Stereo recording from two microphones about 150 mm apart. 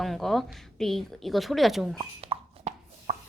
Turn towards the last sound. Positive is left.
turn(degrees=-50)  # may be behind; listen again after turning